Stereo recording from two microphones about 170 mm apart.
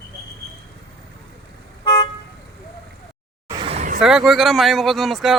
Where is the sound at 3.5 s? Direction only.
25° right (ahead or behind).